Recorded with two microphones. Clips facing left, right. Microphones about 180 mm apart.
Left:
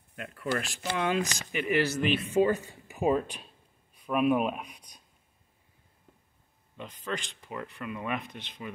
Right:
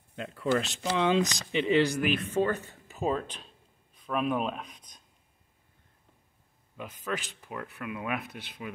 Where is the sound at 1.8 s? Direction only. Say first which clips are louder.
Right 1 dB; 15° right (ahead or behind).